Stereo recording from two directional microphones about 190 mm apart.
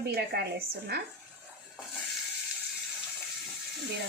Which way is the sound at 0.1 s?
60° right (ahead or behind).